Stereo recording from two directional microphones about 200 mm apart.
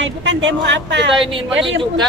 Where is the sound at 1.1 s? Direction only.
25° right (ahead or behind).